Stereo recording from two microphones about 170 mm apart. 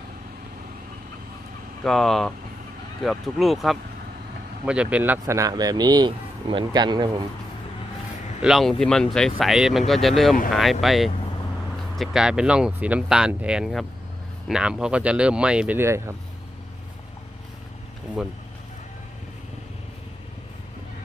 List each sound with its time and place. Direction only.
1.8 s speech: centre (ahead or behind); by 7.2 s 25° right (ahead or behind)
8.4 s speech: centre (ahead or behind)
18.2 s speech: centre (ahead or behind)